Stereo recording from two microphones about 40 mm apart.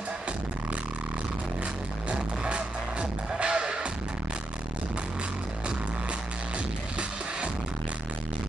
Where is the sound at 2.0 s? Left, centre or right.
Right.